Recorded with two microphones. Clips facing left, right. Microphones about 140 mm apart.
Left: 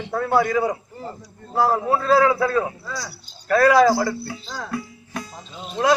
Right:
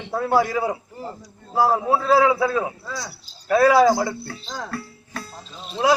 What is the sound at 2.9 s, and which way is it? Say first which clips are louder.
Speech: even; 25° right (ahead or behind).